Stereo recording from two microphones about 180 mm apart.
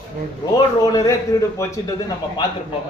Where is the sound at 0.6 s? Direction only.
20° left (ahead or behind).